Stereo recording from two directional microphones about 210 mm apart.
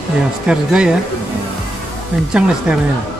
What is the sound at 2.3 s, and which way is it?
Speech, 5° right (ahead or behind).